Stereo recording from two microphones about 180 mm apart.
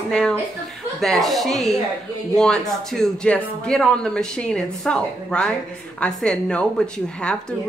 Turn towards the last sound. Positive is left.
turn(degrees=5)  # may be behind; listen again after turning